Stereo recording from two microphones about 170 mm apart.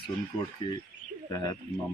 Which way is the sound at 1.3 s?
20° left (ahead or behind).